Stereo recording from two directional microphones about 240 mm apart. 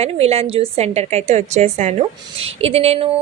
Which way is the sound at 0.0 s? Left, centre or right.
Right.